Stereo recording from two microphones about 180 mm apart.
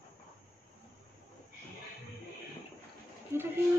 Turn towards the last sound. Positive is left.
turn(degrees=-15)  # may be behind; listen again after turning